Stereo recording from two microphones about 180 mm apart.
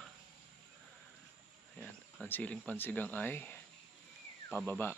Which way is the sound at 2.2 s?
10° left (ahead or behind).